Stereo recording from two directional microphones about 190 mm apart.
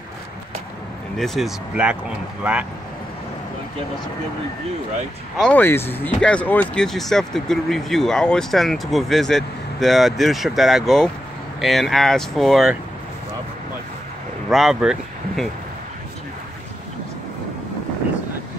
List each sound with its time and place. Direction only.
1.1 s speech: centre (ahead or behind)
5.4 s speech: 10° left (ahead or behind)
14.5 s speech: centre (ahead or behind)